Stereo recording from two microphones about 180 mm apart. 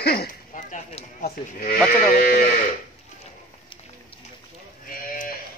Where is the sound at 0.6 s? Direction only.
45° left (ahead or behind).